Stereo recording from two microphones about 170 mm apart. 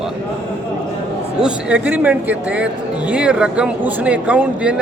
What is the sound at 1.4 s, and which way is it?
A man's voice, 10° right (ahead or behind).